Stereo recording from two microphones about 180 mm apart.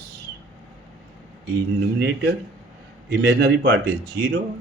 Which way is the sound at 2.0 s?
65° right (ahead or behind).